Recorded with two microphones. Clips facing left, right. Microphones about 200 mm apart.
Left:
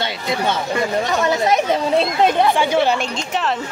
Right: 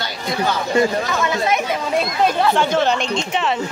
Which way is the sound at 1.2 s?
40° left (ahead or behind).